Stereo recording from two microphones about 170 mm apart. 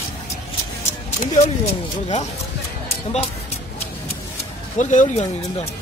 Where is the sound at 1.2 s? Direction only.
40° left (ahead or behind).